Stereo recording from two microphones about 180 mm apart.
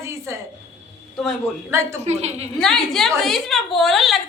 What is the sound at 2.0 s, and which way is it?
Speech, 35° right (ahead or behind).